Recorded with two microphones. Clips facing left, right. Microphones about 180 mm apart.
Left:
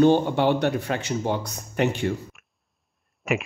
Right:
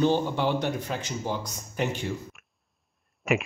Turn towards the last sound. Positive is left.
turn(degrees=0)  # may be behind; listen again after turning